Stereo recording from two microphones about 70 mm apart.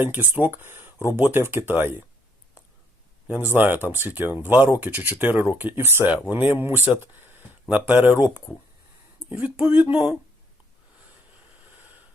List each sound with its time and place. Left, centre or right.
0.0 s speech: right
3.2 s speech: right
7.0 s a sound: right
7.7 s speech: right